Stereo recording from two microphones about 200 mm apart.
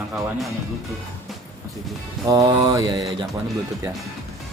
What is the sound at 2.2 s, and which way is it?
Mantra, 15° right (ahead or behind).